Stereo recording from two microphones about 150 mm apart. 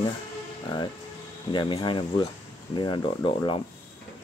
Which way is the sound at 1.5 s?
30° left (ahead or behind).